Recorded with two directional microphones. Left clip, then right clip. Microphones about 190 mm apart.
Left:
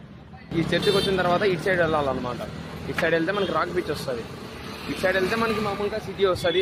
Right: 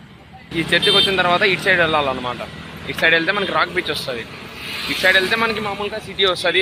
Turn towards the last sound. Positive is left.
turn(degrees=0)  # may be behind; listen again after turning